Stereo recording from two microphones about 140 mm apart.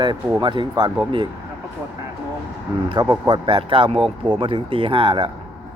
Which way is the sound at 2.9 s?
30° right (ahead or behind).